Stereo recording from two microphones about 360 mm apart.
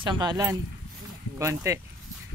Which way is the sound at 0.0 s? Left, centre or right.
Centre.